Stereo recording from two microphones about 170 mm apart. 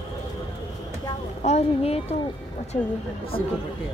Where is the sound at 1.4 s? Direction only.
40° left (ahead or behind).